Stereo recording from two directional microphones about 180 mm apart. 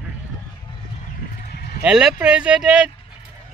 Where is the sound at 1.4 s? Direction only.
60° left (ahead or behind).